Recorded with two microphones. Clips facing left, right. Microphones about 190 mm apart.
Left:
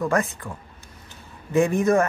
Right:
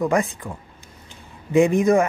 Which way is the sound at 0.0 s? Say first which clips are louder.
Right 2 dB; 15° right (ahead or behind).